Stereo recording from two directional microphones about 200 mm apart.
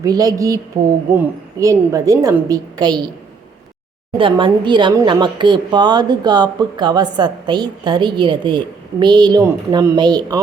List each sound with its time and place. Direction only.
0.0 s a woman's voice: 20° right (ahead or behind)
4.2 s speech: 25° right (ahead or behind)